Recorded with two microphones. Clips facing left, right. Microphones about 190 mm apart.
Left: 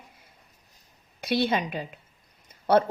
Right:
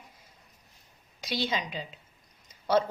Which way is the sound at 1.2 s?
55° left (ahead or behind).